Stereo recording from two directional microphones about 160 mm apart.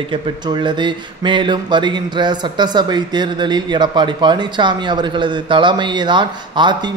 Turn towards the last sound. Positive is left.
turn(degrees=-30)  # may be behind; listen again after turning